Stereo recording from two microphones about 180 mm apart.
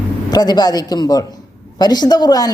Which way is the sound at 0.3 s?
20° left (ahead or behind).